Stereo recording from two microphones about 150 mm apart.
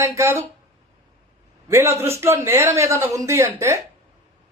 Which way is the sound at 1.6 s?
20° right (ahead or behind).